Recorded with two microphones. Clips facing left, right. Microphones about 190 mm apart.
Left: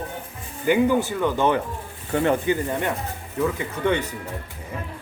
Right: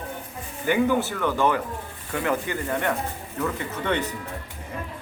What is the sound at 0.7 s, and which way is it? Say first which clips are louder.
Speech: left 3 dB; 15° left (ahead or behind).